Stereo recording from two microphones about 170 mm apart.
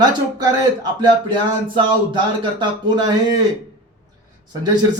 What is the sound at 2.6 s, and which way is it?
Speech, 25° right (ahead or behind).